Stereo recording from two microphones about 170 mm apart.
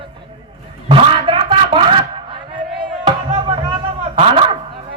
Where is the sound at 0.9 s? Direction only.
35° right (ahead or behind).